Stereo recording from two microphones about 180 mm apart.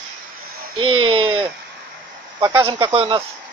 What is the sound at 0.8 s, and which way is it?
Speech, 30° right (ahead or behind).